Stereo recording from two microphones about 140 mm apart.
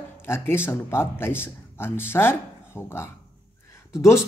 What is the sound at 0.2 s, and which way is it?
Speech, 15° left (ahead or behind).